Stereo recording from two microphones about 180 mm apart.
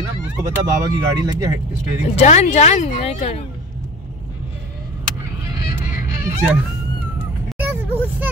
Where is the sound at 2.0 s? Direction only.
40° left (ahead or behind).